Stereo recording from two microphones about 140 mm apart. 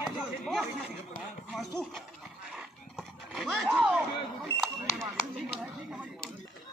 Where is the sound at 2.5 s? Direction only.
5° right (ahead or behind).